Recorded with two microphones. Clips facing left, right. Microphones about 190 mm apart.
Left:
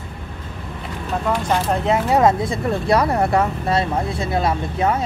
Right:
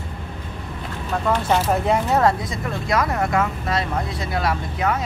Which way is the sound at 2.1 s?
20° left (ahead or behind).